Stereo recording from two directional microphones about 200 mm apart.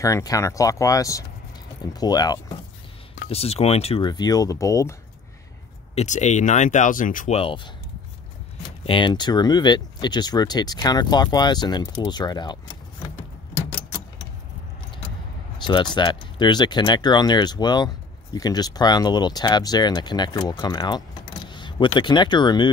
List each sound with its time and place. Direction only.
0.0 s speech: 15° left (ahead or behind)
3.3 s speech: 30° left (ahead or behind)
5.9 s speech: 35° left (ahead or behind)
7.3 s speech: 25° left (ahead or behind)
15.6 s speech: 20° left (ahead or behind)